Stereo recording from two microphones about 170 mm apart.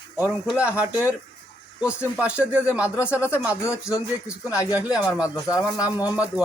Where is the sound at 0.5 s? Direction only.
10° right (ahead or behind).